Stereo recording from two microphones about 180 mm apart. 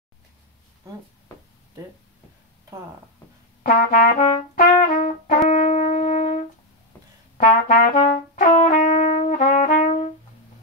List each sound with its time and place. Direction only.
3.6 s trumpet: 45° left (ahead or behind)
4.8 s brass instrument: 45° left (ahead or behind)
7.3 s trumpet: 45° left (ahead or behind)